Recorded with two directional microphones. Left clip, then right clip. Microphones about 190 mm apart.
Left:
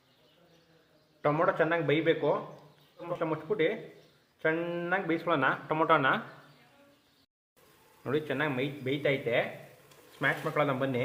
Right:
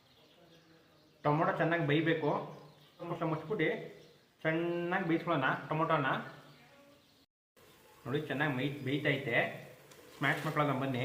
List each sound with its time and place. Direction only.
1.2 s speech: 50° left (ahead or behind)
3.2 s speech: 45° left (ahead or behind); by 6.1 s 60° left (ahead or behind)
8.0 s speech: 50° left (ahead or behind)